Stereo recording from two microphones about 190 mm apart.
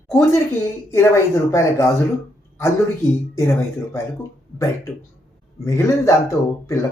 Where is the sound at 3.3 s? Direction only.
15° left (ahead or behind).